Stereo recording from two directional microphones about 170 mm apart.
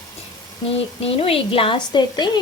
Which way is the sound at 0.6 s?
35° left (ahead or behind).